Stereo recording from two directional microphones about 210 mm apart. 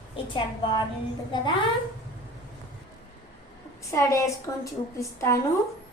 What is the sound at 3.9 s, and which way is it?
A woman's voice, 15° left (ahead or behind).